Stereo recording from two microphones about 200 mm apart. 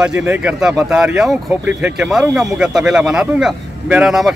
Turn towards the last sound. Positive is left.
turn(degrees=0)  # may be behind; listen again after turning